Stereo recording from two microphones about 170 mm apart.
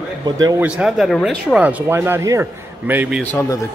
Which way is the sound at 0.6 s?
5° right (ahead or behind).